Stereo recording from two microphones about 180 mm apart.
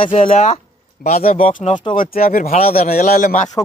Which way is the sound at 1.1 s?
50° left (ahead or behind).